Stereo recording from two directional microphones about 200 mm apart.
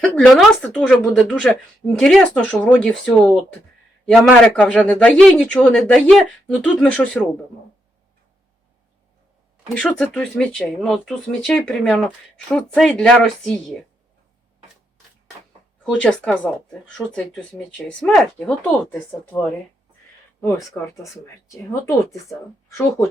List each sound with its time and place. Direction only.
0.0 s speech: 5° left (ahead or behind)
9.7 s speech: 5° left (ahead or behind)
15.8 s speech: 5° left (ahead or behind)
21.0 s speech: 15° left (ahead or behind)